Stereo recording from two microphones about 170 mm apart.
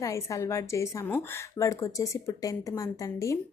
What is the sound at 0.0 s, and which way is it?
A woman's voice, 20° left (ahead or behind).